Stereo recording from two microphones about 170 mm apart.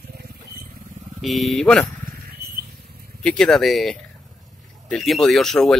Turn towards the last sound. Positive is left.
turn(degrees=0)  # may be behind; listen again after turning